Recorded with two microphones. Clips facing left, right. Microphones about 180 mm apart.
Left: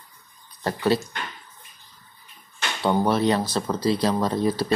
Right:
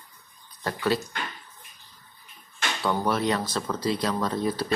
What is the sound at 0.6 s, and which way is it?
Speech, 30° left (ahead or behind).